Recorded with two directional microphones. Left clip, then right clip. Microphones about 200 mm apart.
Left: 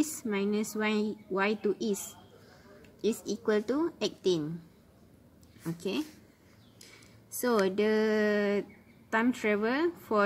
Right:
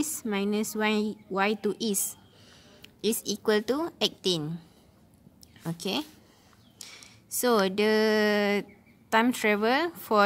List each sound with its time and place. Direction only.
0.0 s a woman's voice: 50° right (ahead or behind)
3.0 s a woman's voice: 50° right (ahead or behind)
5.6 s a woman's voice: 55° right (ahead or behind)